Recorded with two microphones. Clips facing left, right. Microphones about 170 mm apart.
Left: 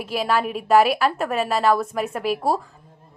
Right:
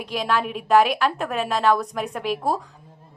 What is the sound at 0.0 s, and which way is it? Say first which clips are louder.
A woman's voice: left 2 dB; 5° left (ahead or behind).